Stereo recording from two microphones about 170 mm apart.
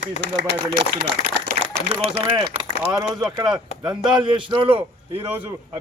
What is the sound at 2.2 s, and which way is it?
A man's voice, 30° right (ahead or behind).